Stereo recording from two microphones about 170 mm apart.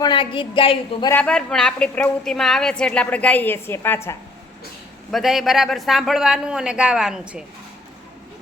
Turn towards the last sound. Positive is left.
turn(degrees=-5)  # may be behind; listen again after turning